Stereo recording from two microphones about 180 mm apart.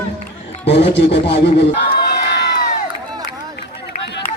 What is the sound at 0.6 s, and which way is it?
Speech, 75° left (ahead or behind).